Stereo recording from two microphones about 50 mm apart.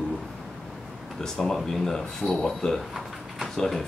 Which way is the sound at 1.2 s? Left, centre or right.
Centre.